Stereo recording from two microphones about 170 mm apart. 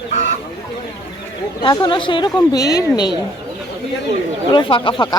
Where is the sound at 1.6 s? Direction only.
25° left (ahead or behind).